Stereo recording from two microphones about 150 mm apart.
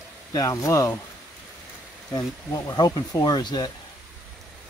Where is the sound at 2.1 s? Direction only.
25° left (ahead or behind).